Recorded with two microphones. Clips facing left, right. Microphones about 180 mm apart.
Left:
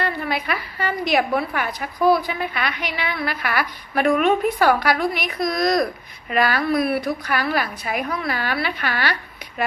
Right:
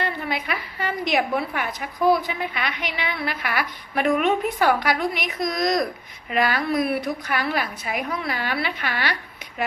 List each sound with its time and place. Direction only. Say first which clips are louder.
0.0 s a woman's voice: left 2 dB; 20° right (ahead or behind)